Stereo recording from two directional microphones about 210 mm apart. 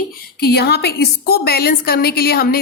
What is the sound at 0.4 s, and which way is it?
A woman's voice, 50° left (ahead or behind).